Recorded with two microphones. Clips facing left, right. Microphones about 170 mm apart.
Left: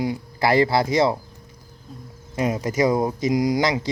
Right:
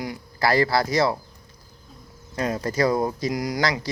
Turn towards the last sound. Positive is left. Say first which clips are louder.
# left 4 dB
turn(degrees=20)  # may be behind; listen again after turning